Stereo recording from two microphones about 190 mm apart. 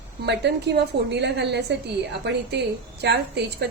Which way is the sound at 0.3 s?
65° right (ahead or behind).